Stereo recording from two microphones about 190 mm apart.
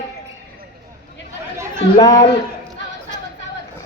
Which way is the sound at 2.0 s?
20° left (ahead or behind).